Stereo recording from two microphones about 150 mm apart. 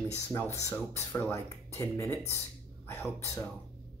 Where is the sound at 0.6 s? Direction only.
20° left (ahead or behind).